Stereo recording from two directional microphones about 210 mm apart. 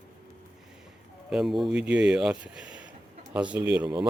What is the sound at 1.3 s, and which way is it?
Speech, centre (ahead or behind).